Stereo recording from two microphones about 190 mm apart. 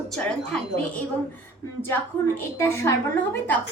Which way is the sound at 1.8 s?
10° left (ahead or behind).